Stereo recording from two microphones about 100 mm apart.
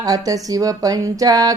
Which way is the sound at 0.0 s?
35° right (ahead or behind).